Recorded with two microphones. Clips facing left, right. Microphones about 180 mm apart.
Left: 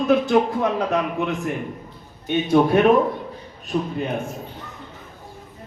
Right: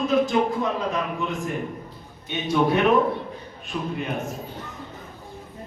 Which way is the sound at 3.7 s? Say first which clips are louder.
Left 6 dB; 40° left (ahead or behind).